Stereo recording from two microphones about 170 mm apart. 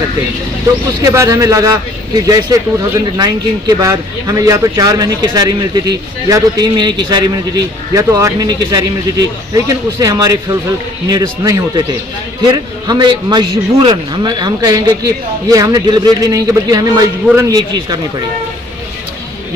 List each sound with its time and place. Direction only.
1.0 s speech: 20° right (ahead or behind)
9.8 s speech: 20° right (ahead or behind)